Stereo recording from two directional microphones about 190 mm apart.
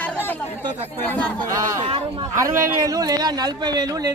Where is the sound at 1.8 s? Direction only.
30° right (ahead or behind).